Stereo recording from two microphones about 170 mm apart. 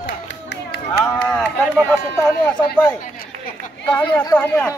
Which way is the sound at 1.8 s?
10° left (ahead or behind).